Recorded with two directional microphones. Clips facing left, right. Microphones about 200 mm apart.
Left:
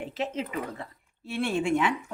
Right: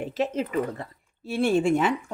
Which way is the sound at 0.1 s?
45° right (ahead or behind).